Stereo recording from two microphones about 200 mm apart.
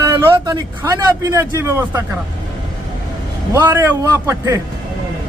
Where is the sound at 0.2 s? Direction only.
15° right (ahead or behind).